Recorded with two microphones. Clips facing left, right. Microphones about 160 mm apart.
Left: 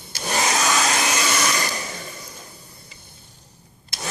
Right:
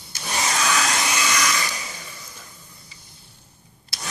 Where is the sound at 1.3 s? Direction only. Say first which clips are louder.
Left 1 dB; 45° left (ahead or behind).